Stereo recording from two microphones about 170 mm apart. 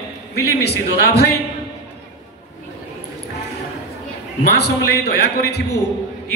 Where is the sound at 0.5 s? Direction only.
70° left (ahead or behind).